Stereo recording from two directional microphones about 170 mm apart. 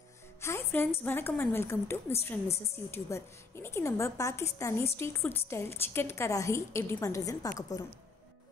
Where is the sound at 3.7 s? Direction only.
15° left (ahead or behind).